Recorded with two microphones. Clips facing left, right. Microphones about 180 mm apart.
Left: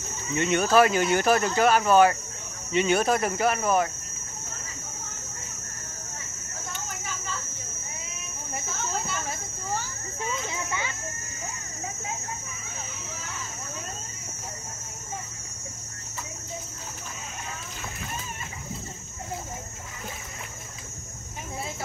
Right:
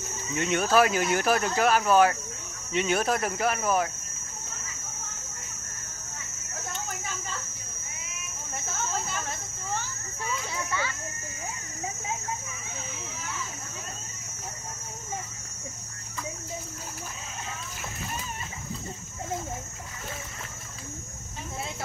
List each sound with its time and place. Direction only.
0.4 s speech: centre (ahead or behind)
10.5 s children playing: 20° left (ahead or behind)